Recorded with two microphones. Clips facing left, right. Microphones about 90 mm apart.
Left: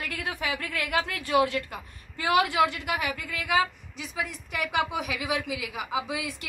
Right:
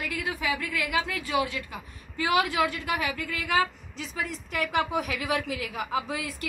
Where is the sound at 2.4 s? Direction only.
20° left (ahead or behind).